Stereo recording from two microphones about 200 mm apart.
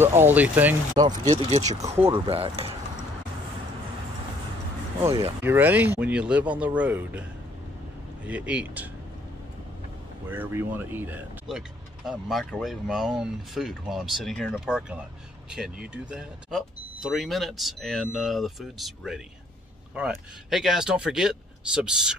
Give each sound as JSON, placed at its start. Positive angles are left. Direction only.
{"t": 0.0, "sound": "speech", "side_deg": -10}
{"t": 1.3, "sound": "speech", "side_deg": -35}
{"t": 5.4, "sound": "speech", "side_deg": -10}
{"t": 8.3, "sound": "speech", "side_deg": -5}
{"t": 10.3, "sound": "speech", "side_deg": -10}